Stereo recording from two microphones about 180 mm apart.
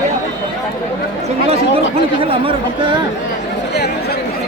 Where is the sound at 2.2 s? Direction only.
30° right (ahead or behind).